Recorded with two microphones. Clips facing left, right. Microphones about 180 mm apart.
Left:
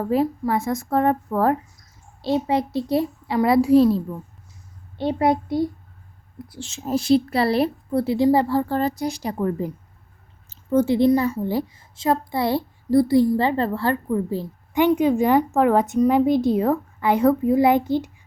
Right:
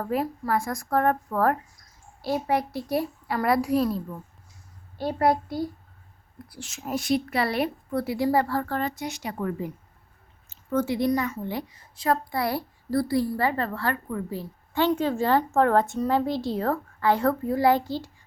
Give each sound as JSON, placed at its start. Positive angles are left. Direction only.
{"t": 0.1, "sound": "a woman's voice", "side_deg": 25}
{"t": 14.8, "sound": "a woman's voice", "side_deg": 15}